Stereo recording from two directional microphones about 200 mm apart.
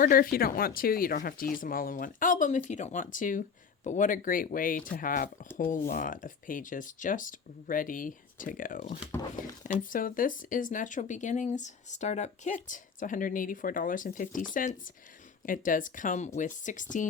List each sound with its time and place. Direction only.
0.0 s speech: 45° left (ahead or behind)